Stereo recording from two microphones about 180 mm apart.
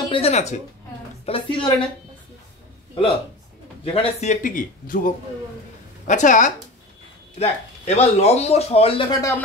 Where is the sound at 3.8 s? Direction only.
30° left (ahead or behind).